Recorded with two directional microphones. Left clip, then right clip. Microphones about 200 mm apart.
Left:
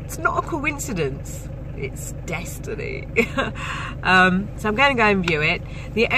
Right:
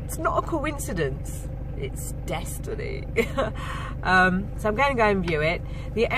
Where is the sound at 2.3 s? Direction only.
Centre (ahead or behind).